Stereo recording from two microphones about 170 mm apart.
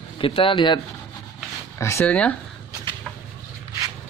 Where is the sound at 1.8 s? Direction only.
15° left (ahead or behind).